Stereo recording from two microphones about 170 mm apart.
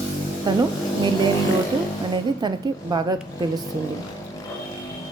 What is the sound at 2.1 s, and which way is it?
Speech, 25° right (ahead or behind).